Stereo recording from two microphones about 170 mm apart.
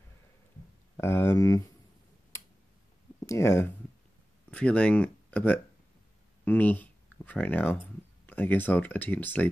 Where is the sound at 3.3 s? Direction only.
15° left (ahead or behind).